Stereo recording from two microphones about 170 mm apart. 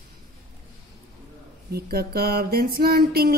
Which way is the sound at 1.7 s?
65° right (ahead or behind).